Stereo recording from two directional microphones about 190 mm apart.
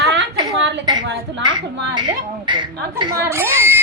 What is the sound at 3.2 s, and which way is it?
Speech, 15° right (ahead or behind).